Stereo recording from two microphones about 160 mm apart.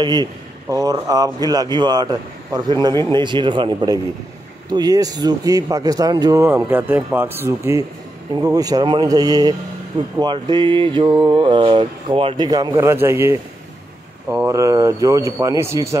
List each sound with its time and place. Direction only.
0.0 s a man's voice: 25° right (ahead or behind)
12.4 s a man's voice: 25° right (ahead or behind)